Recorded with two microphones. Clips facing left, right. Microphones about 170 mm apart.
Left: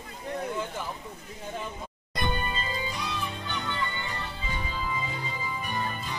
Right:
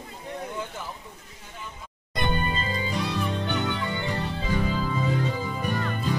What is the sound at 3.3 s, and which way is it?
Music, 70° right (ahead or behind).